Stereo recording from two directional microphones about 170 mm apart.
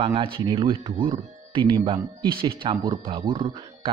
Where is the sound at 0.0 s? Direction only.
35° right (ahead or behind).